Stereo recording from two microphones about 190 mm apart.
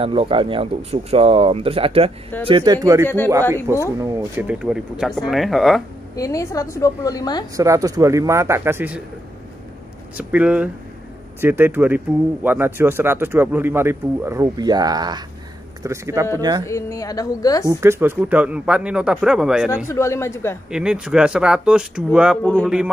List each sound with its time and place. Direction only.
0.0 s a man's voice: 30° right (ahead or behind); by 5.8 s centre (ahead or behind)
6.1 s a woman's voice: 15° left (ahead or behind)
7.5 s speech: 15° right (ahead or behind)
10.1 s speech: 5° right (ahead or behind)
16.6 s a woman's voice: 15° left (ahead or behind)
17.6 s a man's voice: 15° right (ahead or behind)
19.9 s a woman's voice: 15° left (ahead or behind)
20.7 s a man's voice: 5° right (ahead or behind)
22.4 s a woman's voice: 10° left (ahead or behind)